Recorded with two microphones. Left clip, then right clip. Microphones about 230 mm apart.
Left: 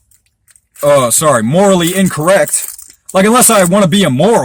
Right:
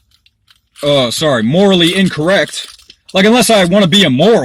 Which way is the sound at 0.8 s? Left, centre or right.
Left.